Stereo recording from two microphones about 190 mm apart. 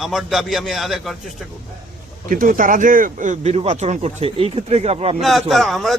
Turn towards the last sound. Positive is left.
turn(degrees=0)  # may be behind; listen again after turning